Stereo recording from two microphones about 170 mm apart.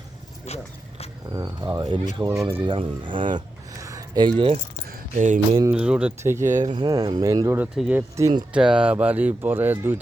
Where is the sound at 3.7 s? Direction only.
20° right (ahead or behind).